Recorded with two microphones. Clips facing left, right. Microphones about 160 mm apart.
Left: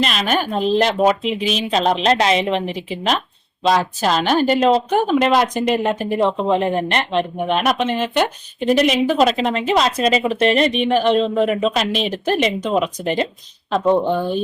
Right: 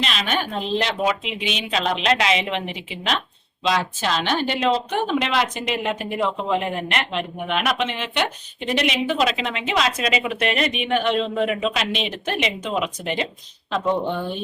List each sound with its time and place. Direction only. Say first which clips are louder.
0.0 s speech: left 5 dB; 45° left (ahead or behind)